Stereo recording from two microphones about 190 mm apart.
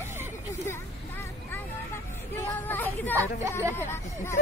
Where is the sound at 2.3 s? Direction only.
10° left (ahead or behind).